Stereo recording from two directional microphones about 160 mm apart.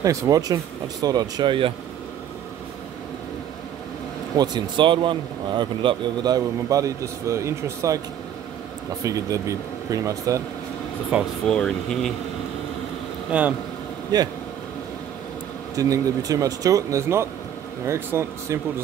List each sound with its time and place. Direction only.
0.0 s speech: 20° right (ahead or behind)
4.4 s speech: 30° right (ahead or behind)
9.0 s speech: 20° right (ahead or behind)
11.1 s speech: 10° right (ahead or behind)
11.4 s speech: 5° left (ahead or behind)
13.3 s speech: 10° right (ahead or behind)
15.7 s speech: 20° right (ahead or behind)